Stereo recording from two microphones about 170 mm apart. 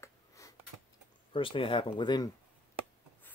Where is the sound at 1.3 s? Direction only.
30° left (ahead or behind).